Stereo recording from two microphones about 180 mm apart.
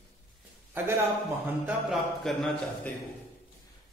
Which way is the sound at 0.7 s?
15° right (ahead or behind).